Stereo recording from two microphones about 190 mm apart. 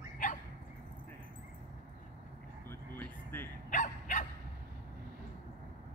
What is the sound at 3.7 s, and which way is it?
Dog, 40° left (ahead or behind).